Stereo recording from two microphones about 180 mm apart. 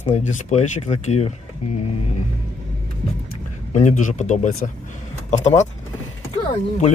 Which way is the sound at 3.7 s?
40° left (ahead or behind).